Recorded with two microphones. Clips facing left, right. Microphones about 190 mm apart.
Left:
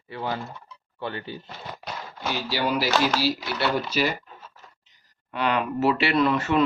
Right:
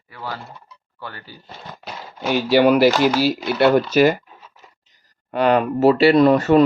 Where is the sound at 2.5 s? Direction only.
65° right (ahead or behind).